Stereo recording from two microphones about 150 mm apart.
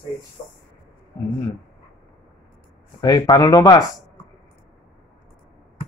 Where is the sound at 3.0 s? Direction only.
25° left (ahead or behind).